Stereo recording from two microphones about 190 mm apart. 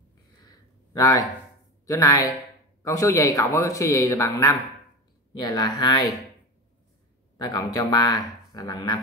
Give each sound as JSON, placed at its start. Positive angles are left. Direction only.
{"t": 0.5, "sound": "a sound", "side_deg": 20}
{"t": 1.9, "sound": "a man's voice", "side_deg": 15}
{"t": 7.3, "sound": "speech", "side_deg": 20}